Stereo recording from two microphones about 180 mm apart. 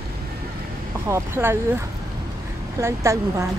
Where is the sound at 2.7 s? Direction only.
15° right (ahead or behind).